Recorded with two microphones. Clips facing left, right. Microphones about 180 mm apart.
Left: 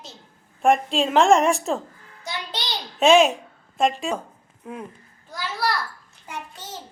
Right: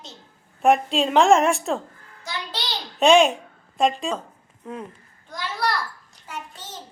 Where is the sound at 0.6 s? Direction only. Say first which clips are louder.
Right 1 dB; centre (ahead or behind).